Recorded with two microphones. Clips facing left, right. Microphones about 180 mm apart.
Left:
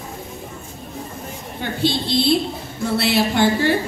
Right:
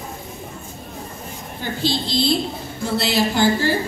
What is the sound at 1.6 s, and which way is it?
A woman's voice, 60° left (ahead or behind).